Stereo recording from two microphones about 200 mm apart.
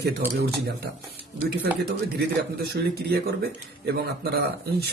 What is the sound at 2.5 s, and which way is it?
Speech, 50° right (ahead or behind).